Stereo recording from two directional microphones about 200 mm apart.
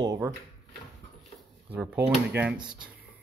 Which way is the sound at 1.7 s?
5° right (ahead or behind).